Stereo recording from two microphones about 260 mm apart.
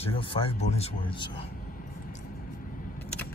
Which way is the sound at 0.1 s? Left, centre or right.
Left.